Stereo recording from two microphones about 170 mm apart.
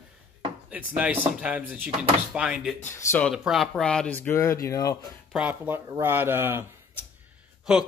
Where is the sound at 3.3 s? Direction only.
Centre (ahead or behind); by 4.9 s 20° left (ahead or behind).